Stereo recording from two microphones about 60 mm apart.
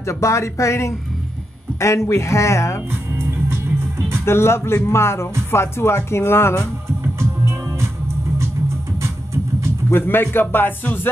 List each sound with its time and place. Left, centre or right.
0.0 s speech: left
2.9 s music: right
4.3 s speech: left
7.2 s music: right
9.0 s music: right
9.8 s speech: left